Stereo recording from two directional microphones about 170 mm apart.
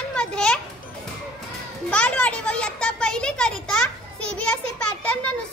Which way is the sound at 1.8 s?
10° left (ahead or behind).